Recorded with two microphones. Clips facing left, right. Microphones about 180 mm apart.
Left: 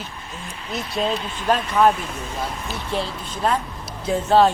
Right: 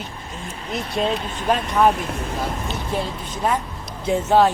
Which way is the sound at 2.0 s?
60° right (ahead or behind).